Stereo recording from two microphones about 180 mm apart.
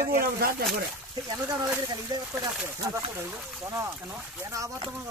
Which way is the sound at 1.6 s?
20° right (ahead or behind).